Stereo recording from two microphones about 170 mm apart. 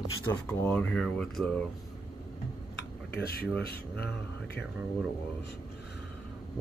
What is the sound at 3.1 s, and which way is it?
Speech, 65° left (ahead or behind).